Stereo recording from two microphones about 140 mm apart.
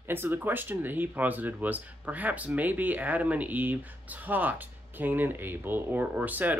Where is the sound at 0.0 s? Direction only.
15° right (ahead or behind).